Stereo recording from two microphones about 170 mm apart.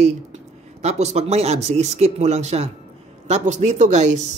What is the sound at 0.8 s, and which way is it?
Speech, 40° right (ahead or behind).